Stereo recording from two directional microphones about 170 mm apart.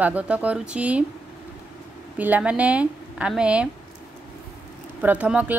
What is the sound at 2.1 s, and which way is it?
A woman's voice, 10° right (ahead or behind).